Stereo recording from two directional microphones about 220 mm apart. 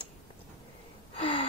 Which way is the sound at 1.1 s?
25° left (ahead or behind).